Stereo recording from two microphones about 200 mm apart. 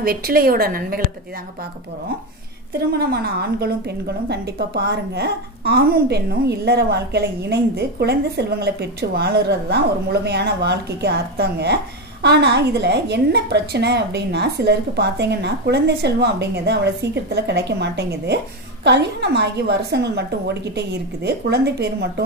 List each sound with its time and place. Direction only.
0.0 s a woman's voice: 50° right (ahead or behind)
2.9 s a woman's voice: 50° right (ahead or behind)